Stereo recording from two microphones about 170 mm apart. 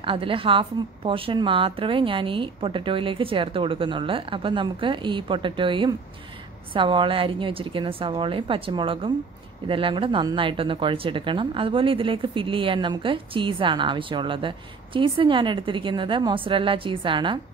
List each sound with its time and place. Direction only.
0.0 s a woman's voice: 30° right (ahead or behind)